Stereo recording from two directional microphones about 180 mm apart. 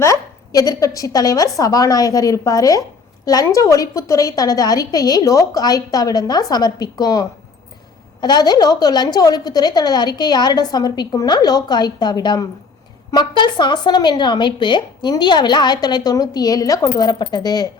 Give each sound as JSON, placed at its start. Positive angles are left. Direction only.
{"t": 0.0, "sound": "a woman's voice", "side_deg": 20}